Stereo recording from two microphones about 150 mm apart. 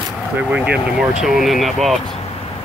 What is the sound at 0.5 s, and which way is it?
Speech, 5° right (ahead or behind).